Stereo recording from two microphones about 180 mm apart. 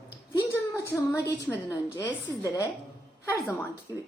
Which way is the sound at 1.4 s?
15° left (ahead or behind).